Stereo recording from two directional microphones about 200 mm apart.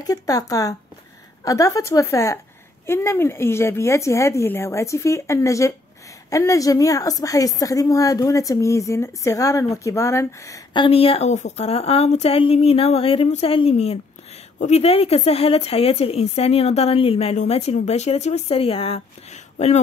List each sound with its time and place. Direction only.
0.0 s a woman's voice: 20° left (ahead or behind); by 19.8 s 35° left (ahead or behind)